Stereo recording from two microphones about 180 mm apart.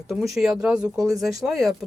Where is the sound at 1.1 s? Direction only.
20° right (ahead or behind).